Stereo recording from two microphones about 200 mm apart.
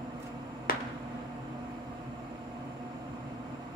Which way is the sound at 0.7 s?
45° left (ahead or behind).